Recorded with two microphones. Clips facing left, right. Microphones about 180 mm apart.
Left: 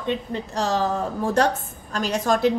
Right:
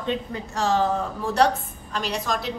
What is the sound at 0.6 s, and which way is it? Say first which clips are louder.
A woman's voice: right 1 dB; 40° left (ahead or behind).